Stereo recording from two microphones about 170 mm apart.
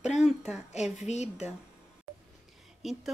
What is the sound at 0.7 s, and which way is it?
Speech, 40° left (ahead or behind).